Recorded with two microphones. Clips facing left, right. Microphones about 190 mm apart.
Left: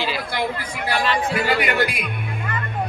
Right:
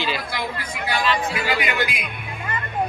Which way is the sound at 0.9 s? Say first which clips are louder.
Left 1 dB; 55° left (ahead or behind).